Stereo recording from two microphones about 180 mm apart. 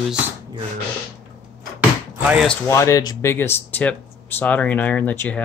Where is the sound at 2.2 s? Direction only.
5° right (ahead or behind).